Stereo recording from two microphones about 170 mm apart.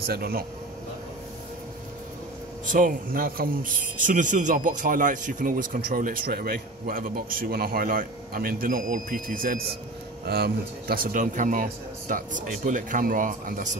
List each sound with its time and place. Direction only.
0.0 s a man's voice: 65° right (ahead or behind)
2.6 s a man's voice: 50° right (ahead or behind)